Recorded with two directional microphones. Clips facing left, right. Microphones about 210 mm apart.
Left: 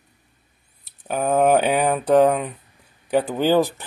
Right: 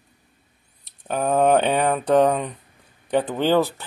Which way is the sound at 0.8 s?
5° left (ahead or behind).